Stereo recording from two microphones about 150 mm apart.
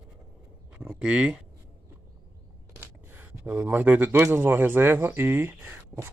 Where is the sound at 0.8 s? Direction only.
5° right (ahead or behind).